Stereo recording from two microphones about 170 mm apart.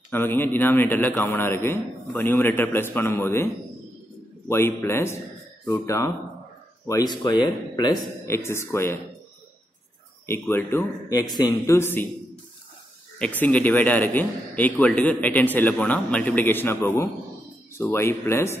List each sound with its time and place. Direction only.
0.1 s a man's voice: 10° left (ahead or behind)
4.5 s a man's voice: 15° left (ahead or behind)
10.2 s a man's voice: 15° left (ahead or behind)
13.2 s a man's voice: 10° left (ahead or behind)